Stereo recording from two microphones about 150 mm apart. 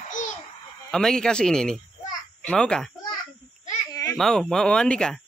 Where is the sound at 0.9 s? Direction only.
5° left (ahead or behind).